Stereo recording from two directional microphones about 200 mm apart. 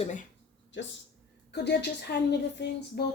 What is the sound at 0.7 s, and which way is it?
A woman's voice, 65° left (ahead or behind).